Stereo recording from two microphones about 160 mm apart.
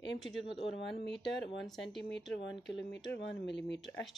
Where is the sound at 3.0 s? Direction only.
90° left.